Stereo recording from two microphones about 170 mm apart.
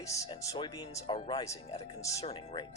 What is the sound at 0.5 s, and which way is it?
Speech, 30° left (ahead or behind).